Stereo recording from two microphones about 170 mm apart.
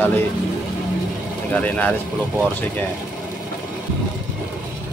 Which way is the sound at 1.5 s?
10° left (ahead or behind).